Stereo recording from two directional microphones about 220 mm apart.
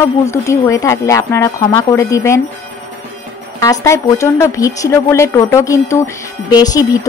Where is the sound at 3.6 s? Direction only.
15° left (ahead or behind).